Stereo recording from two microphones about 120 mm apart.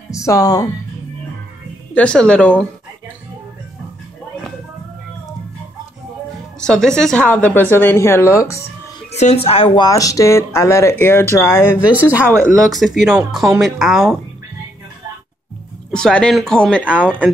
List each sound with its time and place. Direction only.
0.1 s speech: 25° left (ahead or behind)
2.0 s a woman's voice: 10° left (ahead or behind)
6.6 s a woman's voice: 5° left (ahead or behind); by 8.6 s 25° left (ahead or behind)
9.1 s a woman's voice: 65° left (ahead or behind)
9.8 s speech: 30° left (ahead or behind)
11.9 s speech: 15° right (ahead or behind)
12.5 s speech: centre (ahead or behind)
15.9 s a woman's voice: 10° left (ahead or behind)